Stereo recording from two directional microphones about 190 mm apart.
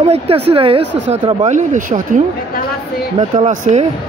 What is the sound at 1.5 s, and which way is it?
Speech, 40° right (ahead or behind).